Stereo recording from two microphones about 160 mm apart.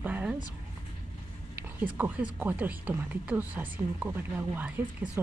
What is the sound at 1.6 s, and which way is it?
Speech, 10° right (ahead or behind).